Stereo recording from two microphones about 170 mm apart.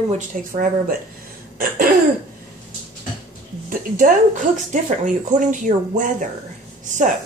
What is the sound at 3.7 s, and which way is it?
Speech, 50° right (ahead or behind).